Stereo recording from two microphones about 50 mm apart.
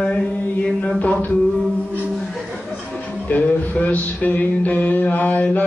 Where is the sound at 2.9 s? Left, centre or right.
Left.